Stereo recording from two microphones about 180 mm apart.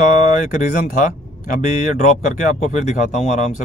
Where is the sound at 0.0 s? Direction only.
40° left (ahead or behind).